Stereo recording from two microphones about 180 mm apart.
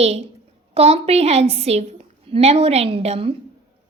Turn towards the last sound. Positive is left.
turn(degrees=-35)  # may be behind; listen again after turning